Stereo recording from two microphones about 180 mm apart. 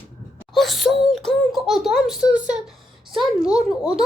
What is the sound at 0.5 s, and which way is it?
Speech, centre (ahead or behind).